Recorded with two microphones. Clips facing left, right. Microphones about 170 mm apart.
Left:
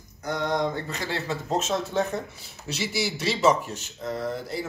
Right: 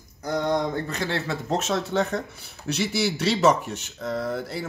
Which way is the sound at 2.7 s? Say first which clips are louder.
Right 3 dB; 60° right (ahead or behind).